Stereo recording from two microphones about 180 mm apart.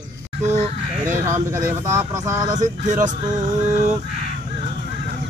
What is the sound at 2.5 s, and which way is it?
Speech, 45° right (ahead or behind).